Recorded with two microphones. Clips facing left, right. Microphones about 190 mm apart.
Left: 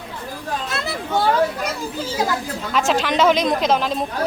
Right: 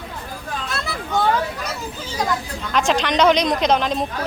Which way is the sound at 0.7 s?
Centre (ahead or behind).